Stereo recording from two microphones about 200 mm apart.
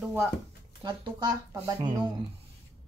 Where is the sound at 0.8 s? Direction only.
20° right (ahead or behind).